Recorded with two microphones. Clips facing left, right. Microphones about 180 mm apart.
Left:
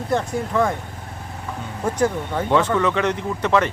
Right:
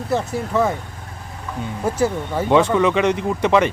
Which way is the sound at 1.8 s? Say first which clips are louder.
Even; 5° right (ahead or behind).